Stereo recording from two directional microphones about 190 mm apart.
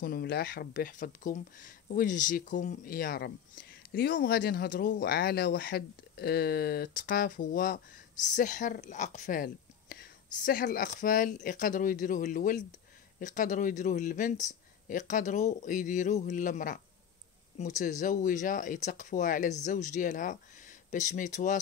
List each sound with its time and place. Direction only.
0.0 s speech: 55° left (ahead or behind); by 21.5 s 40° left (ahead or behind)